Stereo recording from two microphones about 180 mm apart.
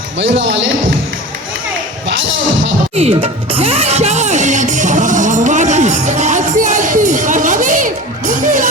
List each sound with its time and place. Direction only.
0.2 s speech: 90° right
2.9 s speech: 35° right (ahead or behind)